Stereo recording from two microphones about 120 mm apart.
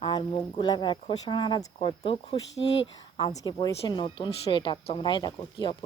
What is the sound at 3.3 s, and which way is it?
Speech, 30° left (ahead or behind).